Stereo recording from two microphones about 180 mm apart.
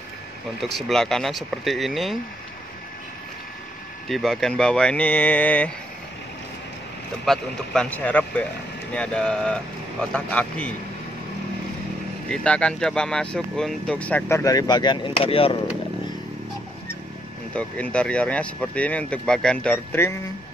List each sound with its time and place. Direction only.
0.7 s speech: centre (ahead or behind)
4.1 s speech: centre (ahead or behind)
7.2 s speech: 5° left (ahead or behind)
12.3 s speech: 5° left (ahead or behind)
14.4 s speech: 20° left (ahead or behind)
17.6 s speech: 5° left (ahead or behind)